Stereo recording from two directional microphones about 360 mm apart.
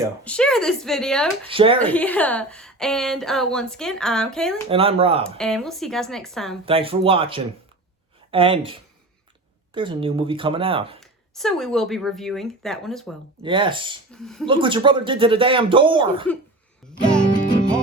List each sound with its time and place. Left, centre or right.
0.3 s a woman's voice: centre
1.5 s speech: centre
1.8 s a woman's voice: centre
4.7 s speech: centre
5.2 s a woman's voice: centre
6.7 s speech: centre
11.0 s a woman's voice: centre
13.4 s speech: centre
14.1 s a woman's voice: centre
14.4 s speech: centre
17.0 s a woman's voice: centre
17.4 s music: centre